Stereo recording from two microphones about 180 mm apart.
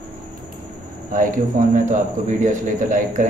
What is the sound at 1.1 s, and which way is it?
Speech, 45° right (ahead or behind).